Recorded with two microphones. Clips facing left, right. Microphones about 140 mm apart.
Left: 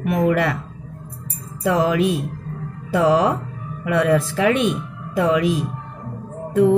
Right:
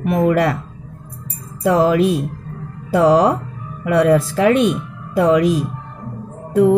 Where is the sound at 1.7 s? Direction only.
40° right (ahead or behind).